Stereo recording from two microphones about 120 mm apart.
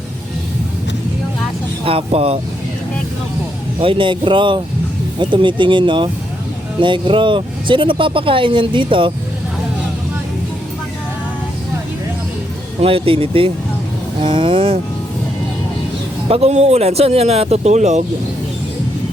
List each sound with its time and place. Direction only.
1.8 s speech: 50° right (ahead or behind)
3.8 s speech: 45° right (ahead or behind)
12.8 s speech: 50° right (ahead or behind)
16.3 s speech: 65° right (ahead or behind)